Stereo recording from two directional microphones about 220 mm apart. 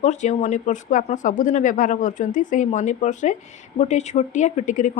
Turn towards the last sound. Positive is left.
turn(degrees=35)  # may be behind; listen again after turning